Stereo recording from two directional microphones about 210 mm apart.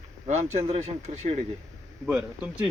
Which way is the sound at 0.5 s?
30° right (ahead or behind).